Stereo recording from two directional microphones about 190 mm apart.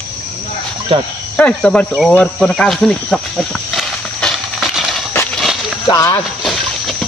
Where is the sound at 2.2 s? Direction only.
5° left (ahead or behind).